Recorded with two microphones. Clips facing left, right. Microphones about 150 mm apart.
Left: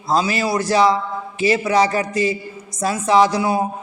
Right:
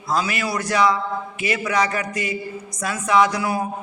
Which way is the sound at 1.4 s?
30° left (ahead or behind).